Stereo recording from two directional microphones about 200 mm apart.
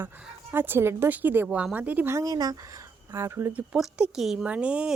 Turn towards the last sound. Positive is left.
turn(degrees=-5)  # may be behind; listen again after turning